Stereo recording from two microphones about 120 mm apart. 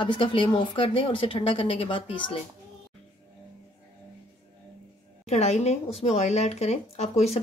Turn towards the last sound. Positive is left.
turn(degrees=65)  # may be behind; listen again after turning